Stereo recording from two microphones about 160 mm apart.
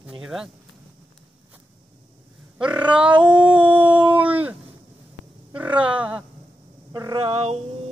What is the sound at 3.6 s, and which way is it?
Dog, 30° right (ahead or behind).